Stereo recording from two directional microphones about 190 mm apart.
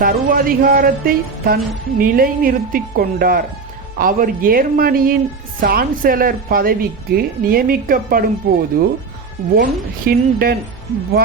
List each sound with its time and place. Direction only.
0.0 s speech: 50° right (ahead or behind)